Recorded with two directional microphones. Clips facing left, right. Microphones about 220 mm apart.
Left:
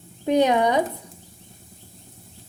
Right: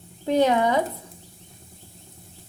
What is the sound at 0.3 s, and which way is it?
Speech, 15° left (ahead or behind).